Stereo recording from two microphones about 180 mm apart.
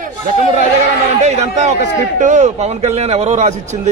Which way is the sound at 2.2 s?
40° right (ahead or behind).